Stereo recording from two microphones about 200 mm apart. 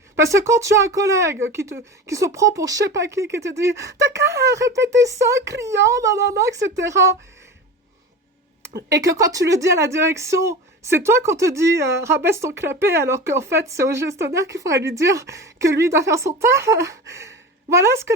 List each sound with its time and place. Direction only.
0.2 s speech: 15° right (ahead or behind)
8.9 s a woman's voice: 15° right (ahead or behind)